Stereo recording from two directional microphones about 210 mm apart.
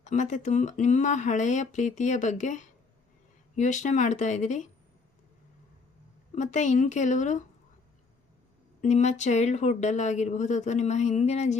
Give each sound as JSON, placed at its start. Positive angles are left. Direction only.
{"t": 0.0, "sound": "speech", "side_deg": 35}
{"t": 6.3, "sound": "speech", "side_deg": 35}
{"t": 8.8, "sound": "speech", "side_deg": 35}